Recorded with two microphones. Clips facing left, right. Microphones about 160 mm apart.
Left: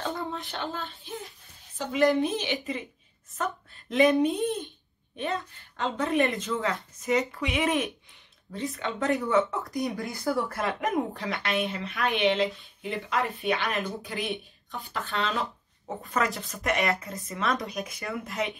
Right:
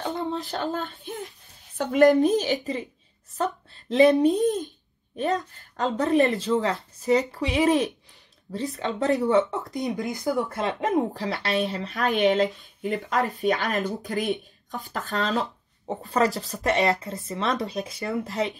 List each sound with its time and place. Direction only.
0.0 s a sound: 20° right (ahead or behind)
0.3 s child singing: 40° right (ahead or behind)
1.8 s a woman's voice: 50° right (ahead or behind); by 18.3 s 25° right (ahead or behind)